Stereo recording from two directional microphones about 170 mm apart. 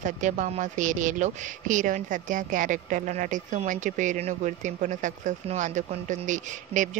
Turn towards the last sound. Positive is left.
turn(degrees=-45)  # may be behind; listen again after turning